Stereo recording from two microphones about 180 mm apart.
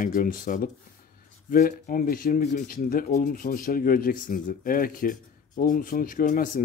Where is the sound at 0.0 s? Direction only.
50° left (ahead or behind).